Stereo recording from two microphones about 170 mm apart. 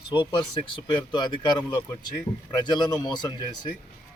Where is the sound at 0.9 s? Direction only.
25° left (ahead or behind).